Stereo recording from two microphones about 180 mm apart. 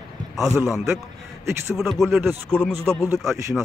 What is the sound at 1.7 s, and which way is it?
Speech, centre (ahead or behind).